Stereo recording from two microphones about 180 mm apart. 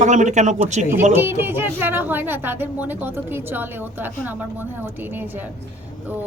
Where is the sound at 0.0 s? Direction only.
40° right (ahead or behind).